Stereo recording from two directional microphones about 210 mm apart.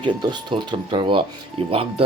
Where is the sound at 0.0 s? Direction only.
20° right (ahead or behind).